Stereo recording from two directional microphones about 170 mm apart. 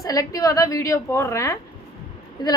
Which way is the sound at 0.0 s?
20° left (ahead or behind).